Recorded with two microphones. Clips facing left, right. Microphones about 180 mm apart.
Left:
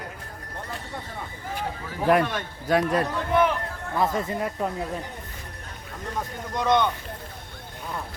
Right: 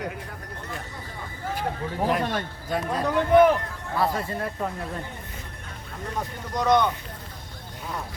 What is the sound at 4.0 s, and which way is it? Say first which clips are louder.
Speech: left 1 dB; 20° left (ahead or behind).